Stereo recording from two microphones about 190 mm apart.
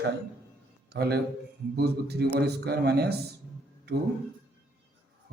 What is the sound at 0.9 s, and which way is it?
A man's voice, 60° right (ahead or behind).